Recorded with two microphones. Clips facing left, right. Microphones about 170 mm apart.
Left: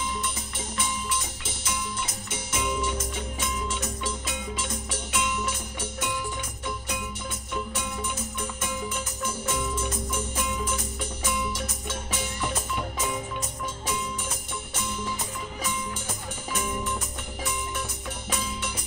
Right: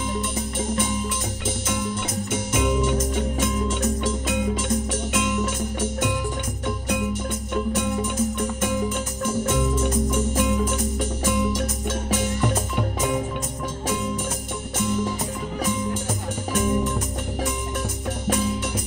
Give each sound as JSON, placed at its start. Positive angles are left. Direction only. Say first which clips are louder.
{"t": 0.6, "sound": "music", "louder": "right 9 dB", "side_deg": -50}
{"t": 2.3, "sound": "music", "louder": "right 7 dB", "side_deg": -50}
{"t": 7.5, "sound": "music", "louder": "right 9 dB", "side_deg": -45}
{"t": 14.8, "sound": "music", "louder": "right 9 dB", "side_deg": -45}
{"t": 16.5, "sound": "music", "louder": "right 8 dB", "side_deg": -40}